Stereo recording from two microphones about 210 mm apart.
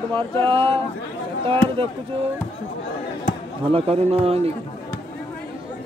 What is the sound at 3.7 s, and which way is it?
Speech, 30° right (ahead or behind).